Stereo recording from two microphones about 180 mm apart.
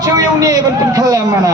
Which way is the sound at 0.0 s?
20° right (ahead or behind).